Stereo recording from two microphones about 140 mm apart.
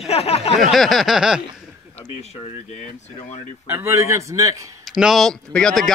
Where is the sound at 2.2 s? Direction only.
50° left (ahead or behind).